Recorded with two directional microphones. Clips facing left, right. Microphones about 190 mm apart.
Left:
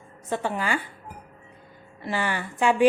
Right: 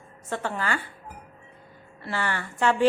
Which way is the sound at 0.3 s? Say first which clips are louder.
Left 2 dB; 15° left (ahead or behind).